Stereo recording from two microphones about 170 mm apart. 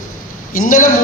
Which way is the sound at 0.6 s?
50° left (ahead or behind).